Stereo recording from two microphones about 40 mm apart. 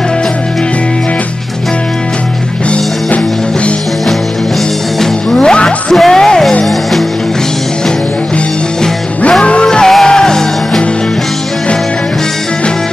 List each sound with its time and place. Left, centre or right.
5.0 s music: centre
5.9 s music: centre
9.4 s music: left